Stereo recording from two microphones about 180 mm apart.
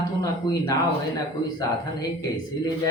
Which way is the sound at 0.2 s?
20° left (ahead or behind).